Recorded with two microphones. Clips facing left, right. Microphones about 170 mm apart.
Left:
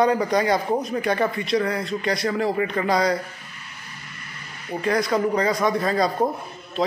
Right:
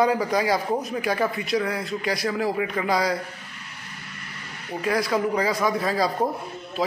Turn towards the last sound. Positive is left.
turn(degrees=0)  # may be behind; listen again after turning